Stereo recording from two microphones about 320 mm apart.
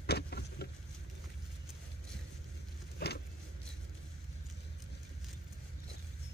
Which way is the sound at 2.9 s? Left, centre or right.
Left.